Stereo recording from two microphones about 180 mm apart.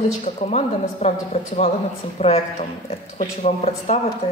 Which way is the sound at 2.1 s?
35° left (ahead or behind).